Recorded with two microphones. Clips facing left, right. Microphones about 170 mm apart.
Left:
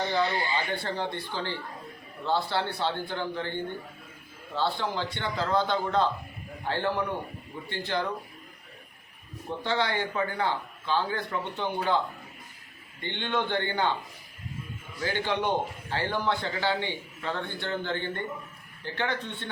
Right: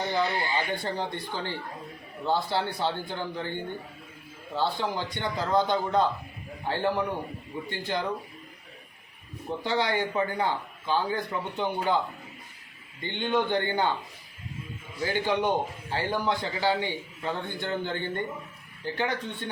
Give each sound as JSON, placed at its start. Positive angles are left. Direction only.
{"t": 0.1, "sound": "a man's voice", "side_deg": -15}
{"t": 2.2, "sound": "a man's voice", "side_deg": -15}
{"t": 9.6, "sound": "a man's voice", "side_deg": -15}
{"t": 13.0, "sound": "a man's voice", "side_deg": -15}
{"t": 15.0, "sound": "a man's voice", "side_deg": -15}